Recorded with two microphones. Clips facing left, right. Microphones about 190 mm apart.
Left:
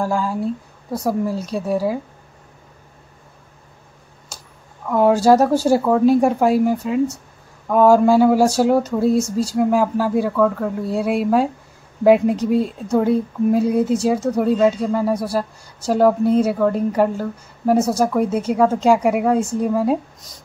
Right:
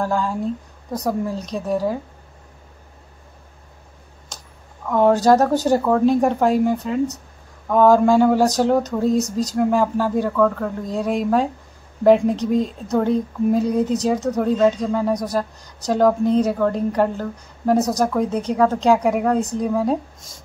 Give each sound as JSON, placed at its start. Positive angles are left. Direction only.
{"t": 0.0, "sound": "speech", "side_deg": 10}
{"t": 4.8, "sound": "speech", "side_deg": 10}
{"t": 17.7, "sound": "speech", "side_deg": -15}
{"t": 18.0, "sound": "speech", "side_deg": 10}